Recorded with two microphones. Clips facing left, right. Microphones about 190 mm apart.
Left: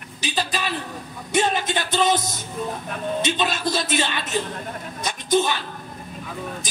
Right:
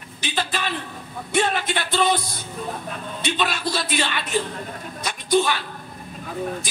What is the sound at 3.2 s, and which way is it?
Speech, 20° left (ahead or behind).